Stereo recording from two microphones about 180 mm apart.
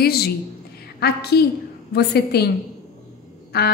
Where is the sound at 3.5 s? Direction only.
60° left (ahead or behind).